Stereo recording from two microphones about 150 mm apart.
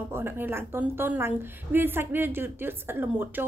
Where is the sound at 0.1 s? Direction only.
15° right (ahead or behind).